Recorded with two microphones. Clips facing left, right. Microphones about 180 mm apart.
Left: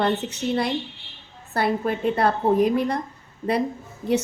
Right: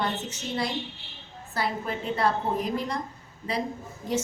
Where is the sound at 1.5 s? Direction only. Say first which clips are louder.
Left 7 dB; 60° left (ahead or behind).